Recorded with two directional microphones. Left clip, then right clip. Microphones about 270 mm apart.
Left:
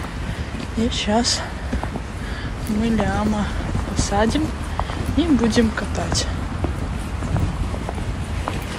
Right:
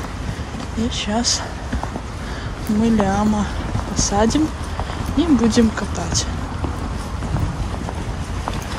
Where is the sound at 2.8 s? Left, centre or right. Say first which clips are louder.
Right 3 dB; centre.